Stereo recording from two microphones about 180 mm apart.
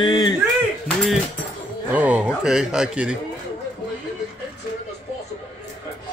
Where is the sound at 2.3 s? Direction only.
5° right (ahead or behind).